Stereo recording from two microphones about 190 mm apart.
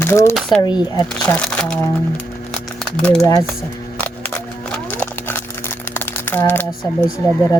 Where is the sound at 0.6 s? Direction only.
25° left (ahead or behind).